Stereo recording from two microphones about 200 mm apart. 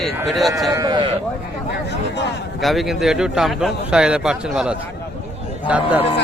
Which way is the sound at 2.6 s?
Centre (ahead or behind).